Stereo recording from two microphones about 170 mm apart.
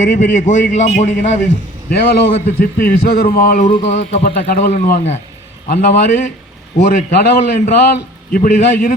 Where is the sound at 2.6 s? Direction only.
60° left (ahead or behind).